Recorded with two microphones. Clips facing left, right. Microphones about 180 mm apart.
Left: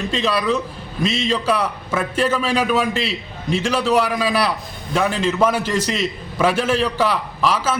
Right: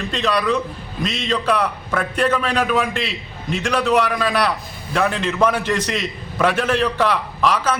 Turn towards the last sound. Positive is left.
turn(degrees=5)  # may be behind; listen again after turning